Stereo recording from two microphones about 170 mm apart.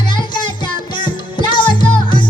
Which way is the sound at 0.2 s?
25° left (ahead or behind).